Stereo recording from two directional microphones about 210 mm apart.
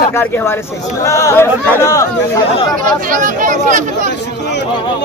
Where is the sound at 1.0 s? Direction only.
15° left (ahead or behind).